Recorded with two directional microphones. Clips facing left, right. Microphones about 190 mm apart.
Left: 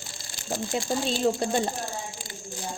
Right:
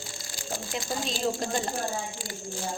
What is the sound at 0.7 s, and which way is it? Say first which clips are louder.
Speech: left 5 dB; 30° left (ahead or behind).